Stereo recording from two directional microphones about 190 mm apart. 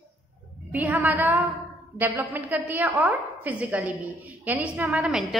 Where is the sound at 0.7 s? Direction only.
10° right (ahead or behind).